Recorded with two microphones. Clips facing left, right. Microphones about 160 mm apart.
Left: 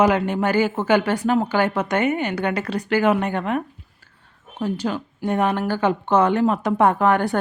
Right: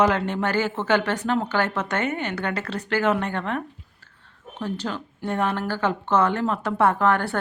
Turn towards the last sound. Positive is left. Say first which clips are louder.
# left 3 dB
turn(degrees=15)  # may be behind; listen again after turning